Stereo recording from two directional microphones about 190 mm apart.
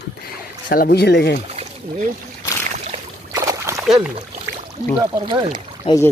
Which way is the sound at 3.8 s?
Centre (ahead or behind).